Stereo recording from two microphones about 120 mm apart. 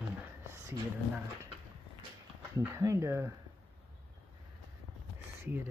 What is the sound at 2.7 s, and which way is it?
Speech, 25° right (ahead or behind).